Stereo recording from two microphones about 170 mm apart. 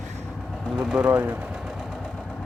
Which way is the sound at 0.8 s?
5° right (ahead or behind).